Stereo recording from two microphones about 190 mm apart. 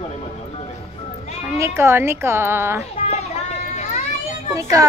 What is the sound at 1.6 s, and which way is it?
A woman's voice, 15° right (ahead or behind).